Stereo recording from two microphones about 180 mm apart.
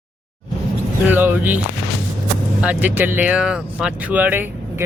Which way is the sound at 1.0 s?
10° right (ahead or behind).